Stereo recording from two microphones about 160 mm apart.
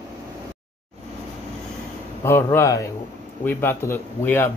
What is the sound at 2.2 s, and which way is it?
Speech, 15° left (ahead or behind).